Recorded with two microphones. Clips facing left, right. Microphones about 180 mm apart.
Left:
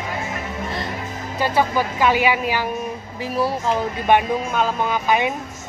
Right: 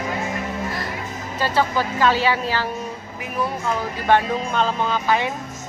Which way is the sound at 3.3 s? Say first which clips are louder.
Left 3 dB; 35° left (ahead or behind).